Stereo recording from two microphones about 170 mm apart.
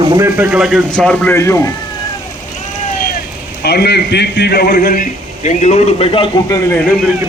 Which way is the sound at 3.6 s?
75° left (ahead or behind).